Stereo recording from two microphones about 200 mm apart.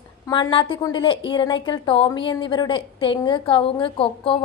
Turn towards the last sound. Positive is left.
turn(degrees=25)  # may be behind; listen again after turning